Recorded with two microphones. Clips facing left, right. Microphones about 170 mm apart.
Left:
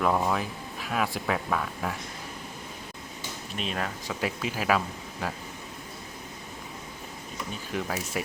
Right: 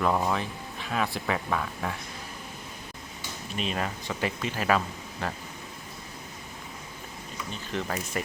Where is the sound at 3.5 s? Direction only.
Centre (ahead or behind).